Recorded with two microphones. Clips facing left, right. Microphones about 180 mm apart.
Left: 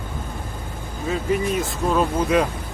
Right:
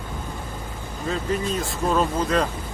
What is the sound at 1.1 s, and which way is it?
Speech, 10° left (ahead or behind).